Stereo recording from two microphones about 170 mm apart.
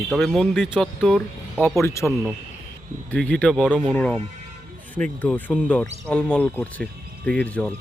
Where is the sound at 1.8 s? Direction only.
15° left (ahead or behind).